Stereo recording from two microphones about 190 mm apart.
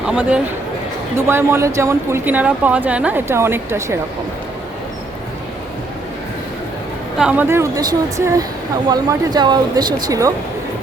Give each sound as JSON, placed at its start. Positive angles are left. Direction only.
{"t": 0.0, "sound": "speech", "side_deg": -5}
{"t": 7.2, "sound": "speech", "side_deg": -5}